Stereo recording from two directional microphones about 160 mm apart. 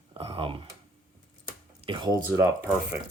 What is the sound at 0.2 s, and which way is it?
Speech, 35° right (ahead or behind).